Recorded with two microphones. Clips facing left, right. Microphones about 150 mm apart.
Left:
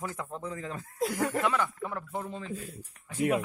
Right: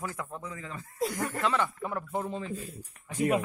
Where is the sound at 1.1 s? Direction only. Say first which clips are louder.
Left 4 dB; 70° left (ahead or behind).